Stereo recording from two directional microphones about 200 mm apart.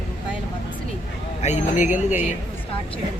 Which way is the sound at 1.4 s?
35° left (ahead or behind).